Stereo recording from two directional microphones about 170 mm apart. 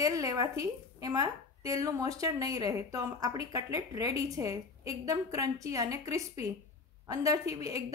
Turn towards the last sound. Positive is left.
turn(degrees=-20)  # may be behind; listen again after turning